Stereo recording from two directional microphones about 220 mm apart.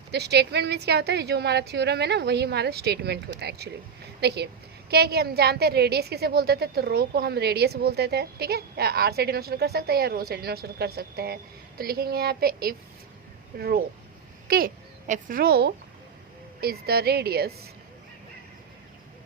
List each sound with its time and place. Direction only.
0.1 s a woman's voice: 50° right (ahead or behind)